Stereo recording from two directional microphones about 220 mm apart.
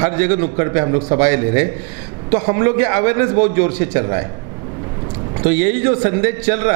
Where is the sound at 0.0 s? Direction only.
10° right (ahead or behind).